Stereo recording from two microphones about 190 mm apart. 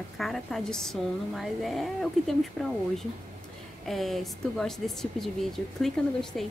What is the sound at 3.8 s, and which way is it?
A woman's voice, centre (ahead or behind).